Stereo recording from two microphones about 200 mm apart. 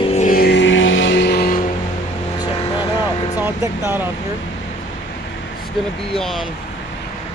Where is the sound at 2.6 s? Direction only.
20° left (ahead or behind).